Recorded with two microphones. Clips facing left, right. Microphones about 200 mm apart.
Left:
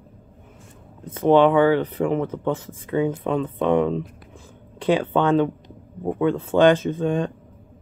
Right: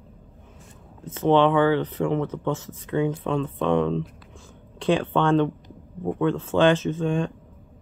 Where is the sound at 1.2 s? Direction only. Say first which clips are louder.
Left 3 dB; 10° left (ahead or behind).